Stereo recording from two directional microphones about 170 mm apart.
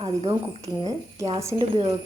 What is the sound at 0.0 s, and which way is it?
A woman's voice, 30° right (ahead or behind).